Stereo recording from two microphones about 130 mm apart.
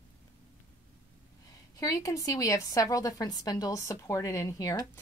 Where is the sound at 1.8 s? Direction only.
25° left (ahead or behind).